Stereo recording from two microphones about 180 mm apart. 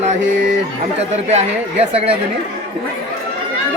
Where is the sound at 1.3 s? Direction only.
35° right (ahead or behind).